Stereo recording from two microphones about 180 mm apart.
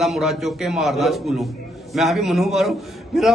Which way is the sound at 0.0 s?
Centre (ahead or behind).